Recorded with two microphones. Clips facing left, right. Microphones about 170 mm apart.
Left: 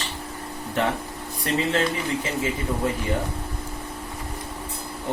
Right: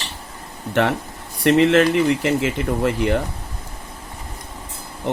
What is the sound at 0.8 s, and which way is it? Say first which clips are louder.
Speech: right 5 dB; 80° right.